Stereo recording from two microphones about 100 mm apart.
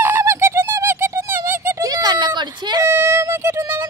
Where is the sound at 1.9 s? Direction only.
40° right (ahead or behind).